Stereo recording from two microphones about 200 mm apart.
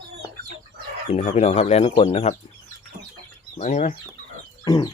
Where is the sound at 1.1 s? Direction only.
40° left (ahead or behind).